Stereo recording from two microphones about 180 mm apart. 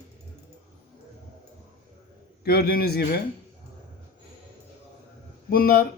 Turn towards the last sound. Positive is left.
turn(degrees=55)  # may be behind; listen again after turning